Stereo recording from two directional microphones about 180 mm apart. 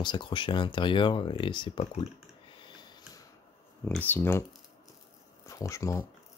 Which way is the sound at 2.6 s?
25° left (ahead or behind).